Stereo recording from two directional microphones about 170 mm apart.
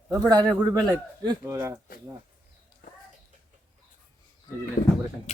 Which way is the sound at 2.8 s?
55° left (ahead or behind).